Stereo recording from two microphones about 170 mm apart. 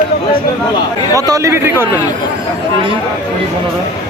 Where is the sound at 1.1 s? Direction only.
20° right (ahead or behind).